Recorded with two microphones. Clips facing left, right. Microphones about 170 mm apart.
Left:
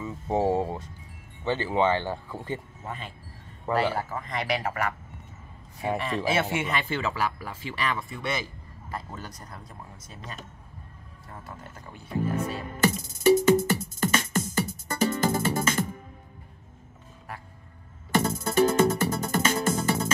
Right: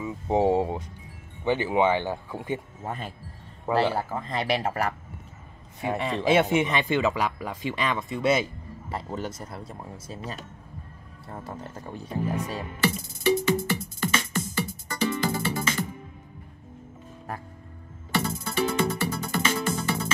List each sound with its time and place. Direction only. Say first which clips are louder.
0.0 s speech: right 3 dB; 15° right (ahead or behind)
2.8 s speech: right 4 dB; 45° right (ahead or behind)
4.1 s speech: right 2 dB; 30° right (ahead or behind)
6.2 s speech: right 8 dB; 20° right (ahead or behind)
11.2 s speech: right 6 dB; 35° right (ahead or behind)
12.8 s music: left 4 dB; 45° left (ahead or behind)
18.1 s music: left 4 dB; 45° left (ahead or behind)